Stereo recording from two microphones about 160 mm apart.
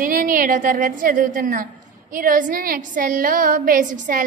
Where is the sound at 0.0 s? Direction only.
60° right (ahead or behind).